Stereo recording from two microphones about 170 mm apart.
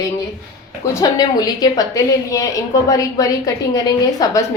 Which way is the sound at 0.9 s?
20° left (ahead or behind).